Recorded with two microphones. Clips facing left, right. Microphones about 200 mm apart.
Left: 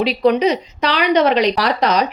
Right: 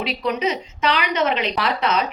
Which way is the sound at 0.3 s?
35° left (ahead or behind).